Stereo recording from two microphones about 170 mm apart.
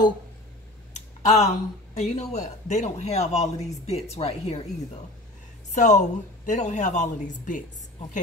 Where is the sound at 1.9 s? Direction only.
40° left (ahead or behind).